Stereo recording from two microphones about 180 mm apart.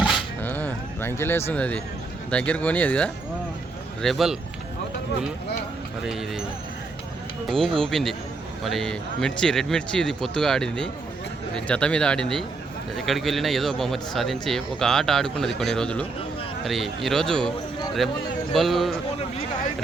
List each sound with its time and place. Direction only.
0.4 s a sound: 10° left (ahead or behind)
2.3 s a man's voice: 5° left (ahead or behind)
6.0 s a man's voice: centre (ahead or behind)
7.4 s a man's voice: centre (ahead or behind)